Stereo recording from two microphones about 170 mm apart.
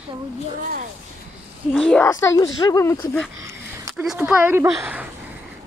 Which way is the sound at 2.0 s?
20° left (ahead or behind).